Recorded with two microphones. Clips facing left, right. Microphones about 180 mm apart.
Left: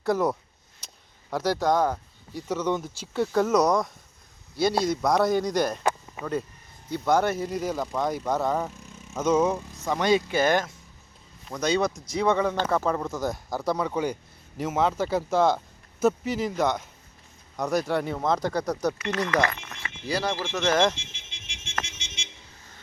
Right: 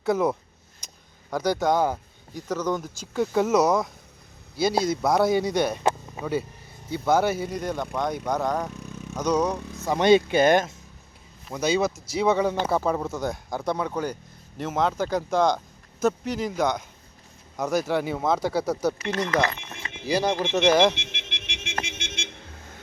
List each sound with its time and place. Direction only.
0.0 s speech: centre (ahead or behind)
2.5 s speech: 10° left (ahead or behind)
2.9 s speech: 5° right (ahead or behind)
6.9 s speech: 5° right (ahead or behind)
8.7 s vehicle: 65° right (ahead or behind)
9.1 s speech: 5° left (ahead or behind)
10.0 s speech: 25° right (ahead or behind)
11.4 s speech: 5° right (ahead or behind)
19.3 s speech: 25° right (ahead or behind)
20.9 s a sound: 70° right (ahead or behind)
21.8 s vehicle: 60° right (ahead or behind)